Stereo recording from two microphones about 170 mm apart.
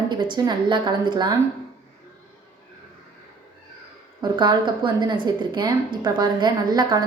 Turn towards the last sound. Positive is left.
turn(degrees=-25)  # may be behind; listen again after turning